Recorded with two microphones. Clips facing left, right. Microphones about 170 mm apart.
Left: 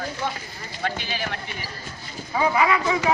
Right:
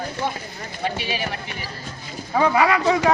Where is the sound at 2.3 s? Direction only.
40° right (ahead or behind).